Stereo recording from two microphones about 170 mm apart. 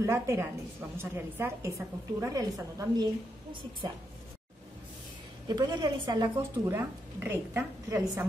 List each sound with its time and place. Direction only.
0.0 s a woman's voice: 15° right (ahead or behind)
5.5 s a woman's voice: 25° right (ahead or behind)
6.2 s a woman's voice: 10° right (ahead or behind)